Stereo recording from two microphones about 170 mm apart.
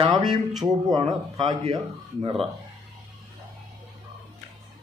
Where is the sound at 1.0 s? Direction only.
35° right (ahead or behind).